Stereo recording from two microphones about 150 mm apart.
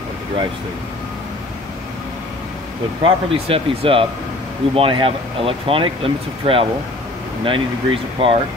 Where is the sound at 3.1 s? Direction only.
40° right (ahead or behind).